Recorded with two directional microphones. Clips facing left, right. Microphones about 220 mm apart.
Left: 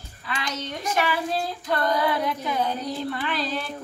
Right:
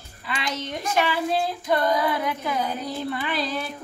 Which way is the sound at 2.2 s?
5° right (ahead or behind).